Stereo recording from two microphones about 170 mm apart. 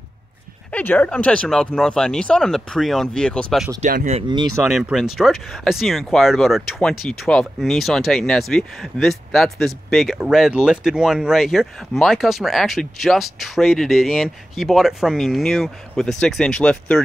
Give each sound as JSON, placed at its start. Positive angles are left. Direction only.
{"t": 0.7, "sound": "speech", "side_deg": 10}
{"t": 3.8, "sound": "speech", "side_deg": -45}
{"t": 4.6, "sound": "speech", "side_deg": 0}